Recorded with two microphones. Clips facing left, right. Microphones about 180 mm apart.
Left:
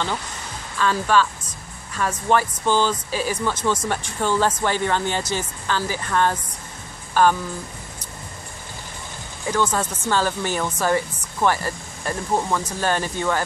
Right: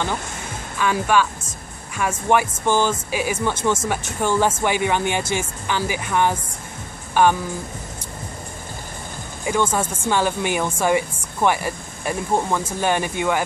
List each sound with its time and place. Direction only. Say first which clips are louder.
0.7 s a woman's voice: even; 15° right (ahead or behind)
4.2 s a woman's voice: right 1 dB; 10° right (ahead or behind)
9.5 s a woman's voice: right 1 dB; 10° right (ahead or behind)